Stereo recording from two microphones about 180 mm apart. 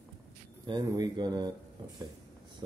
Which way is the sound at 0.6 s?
20° right (ahead or behind).